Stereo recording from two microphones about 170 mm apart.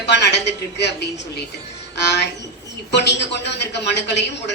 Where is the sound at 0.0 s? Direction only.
90° left.